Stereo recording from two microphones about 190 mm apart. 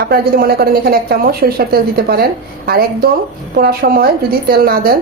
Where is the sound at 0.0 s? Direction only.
55° right (ahead or behind).